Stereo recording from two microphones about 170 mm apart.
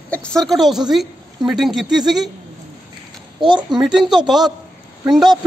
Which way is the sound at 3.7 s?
Centre (ahead or behind).